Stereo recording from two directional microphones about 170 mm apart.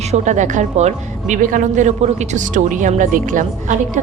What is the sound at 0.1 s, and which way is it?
A woman's voice, 45° right (ahead or behind).